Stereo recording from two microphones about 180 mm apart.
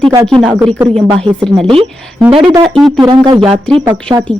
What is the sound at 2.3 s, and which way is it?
Speech, 25° right (ahead or behind).